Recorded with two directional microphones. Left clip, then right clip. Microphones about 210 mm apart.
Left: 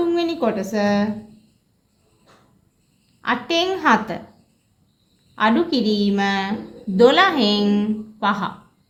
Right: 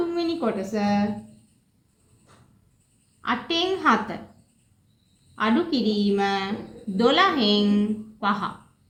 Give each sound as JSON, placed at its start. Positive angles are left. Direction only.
{"t": 0.1, "sound": "a woman's voice", "side_deg": 40}
{"t": 3.2, "sound": "a woman's voice", "side_deg": 40}
{"t": 5.3, "sound": "a woman's voice", "side_deg": 40}